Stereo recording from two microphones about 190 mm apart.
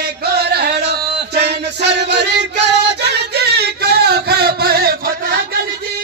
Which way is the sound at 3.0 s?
60° right (ahead or behind).